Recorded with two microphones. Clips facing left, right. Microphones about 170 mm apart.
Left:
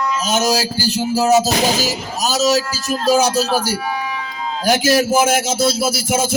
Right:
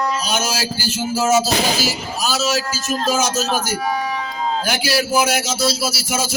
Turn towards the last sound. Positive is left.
turn(degrees=50)  # may be behind; listen again after turning